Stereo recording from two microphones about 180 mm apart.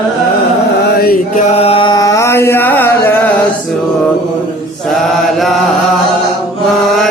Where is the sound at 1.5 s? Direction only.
35° left (ahead or behind); by 3.3 s 10° left (ahead or behind).